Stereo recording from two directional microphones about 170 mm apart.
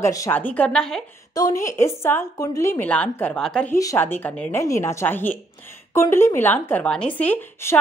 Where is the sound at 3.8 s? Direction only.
15° left (ahead or behind).